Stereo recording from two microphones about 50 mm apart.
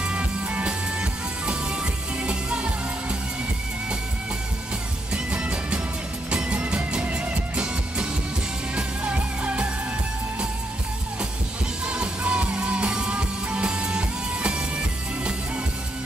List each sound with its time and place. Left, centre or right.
0.0 s music: right
5.1 s music: right
8.7 s music: right
11.8 s music: right